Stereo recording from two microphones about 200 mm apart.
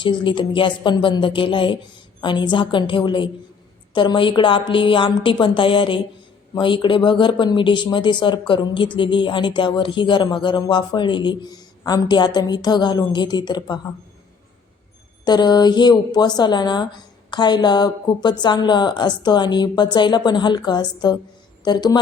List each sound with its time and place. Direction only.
0.0 s speech: 25° left (ahead or behind)
15.2 s speech: 20° left (ahead or behind)